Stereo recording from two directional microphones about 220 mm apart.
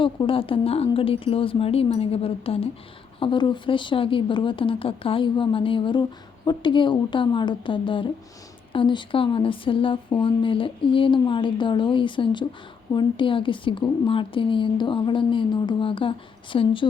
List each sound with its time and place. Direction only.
0.0 s speech: 25° left (ahead or behind)